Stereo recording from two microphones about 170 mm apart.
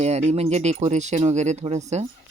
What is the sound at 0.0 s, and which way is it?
A woman's voice, 40° right (ahead or behind).